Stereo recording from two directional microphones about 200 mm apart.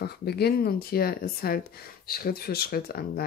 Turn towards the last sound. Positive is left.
turn(degrees=50)  # may be behind; listen again after turning